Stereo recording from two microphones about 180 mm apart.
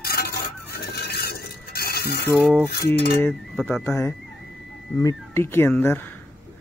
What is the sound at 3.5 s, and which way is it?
Speech, centre (ahead or behind).